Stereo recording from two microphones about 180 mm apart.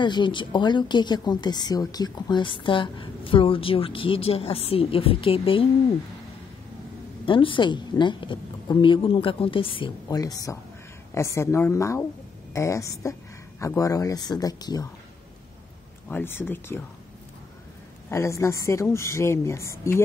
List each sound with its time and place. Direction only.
0.0 s a woman's voice: 25° left (ahead or behind)
7.2 s a woman's voice: 30° left (ahead or behind)
16.1 s a woman's voice: 10° left (ahead or behind)
18.1 s a woman's voice: 15° left (ahead or behind)